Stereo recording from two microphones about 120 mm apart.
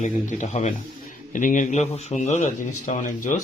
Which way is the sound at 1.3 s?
90° left.